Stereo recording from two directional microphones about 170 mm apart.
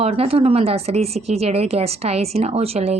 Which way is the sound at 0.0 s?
35° right (ahead or behind).